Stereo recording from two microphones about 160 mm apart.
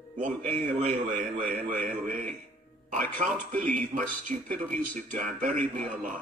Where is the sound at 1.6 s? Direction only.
65° right (ahead or behind).